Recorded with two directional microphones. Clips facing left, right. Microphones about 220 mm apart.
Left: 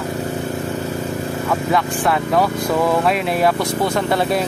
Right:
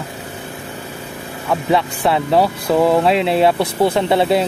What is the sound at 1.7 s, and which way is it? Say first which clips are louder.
Speech: right 3 dB; 30° right (ahead or behind).